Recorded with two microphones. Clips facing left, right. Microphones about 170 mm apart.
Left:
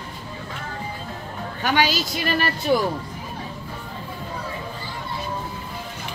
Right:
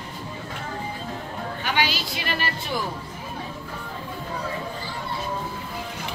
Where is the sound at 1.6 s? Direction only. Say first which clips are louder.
Left 5 dB; 40° left (ahead or behind).